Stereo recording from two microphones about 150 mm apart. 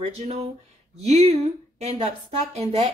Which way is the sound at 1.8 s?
45° right (ahead or behind).